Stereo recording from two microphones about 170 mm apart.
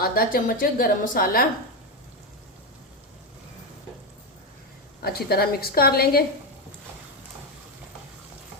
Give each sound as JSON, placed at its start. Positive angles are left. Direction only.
{"t": 0.0, "sound": "a woman's voice", "side_deg": 60}
{"t": 5.0, "sound": "a woman's voice", "side_deg": 65}